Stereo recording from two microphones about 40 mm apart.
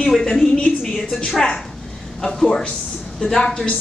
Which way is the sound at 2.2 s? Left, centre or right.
Centre.